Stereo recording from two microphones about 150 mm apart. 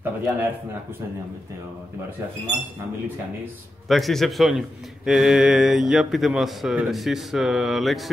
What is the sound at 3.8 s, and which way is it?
A man's voice, centre (ahead or behind).